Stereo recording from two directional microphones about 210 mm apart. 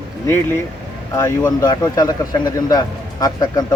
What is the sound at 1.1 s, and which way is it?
Speech, 20° left (ahead or behind).